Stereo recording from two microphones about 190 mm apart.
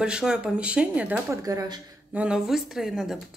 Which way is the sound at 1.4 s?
20° right (ahead or behind).